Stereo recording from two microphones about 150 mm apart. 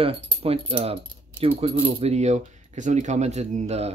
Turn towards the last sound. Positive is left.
turn(degrees=-50)  # may be behind; listen again after turning